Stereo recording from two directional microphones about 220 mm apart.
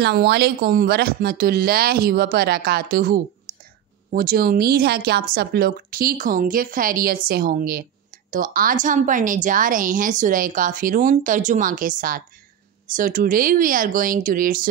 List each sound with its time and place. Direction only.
0.0 s a woman's voice: 50° right (ahead or behind)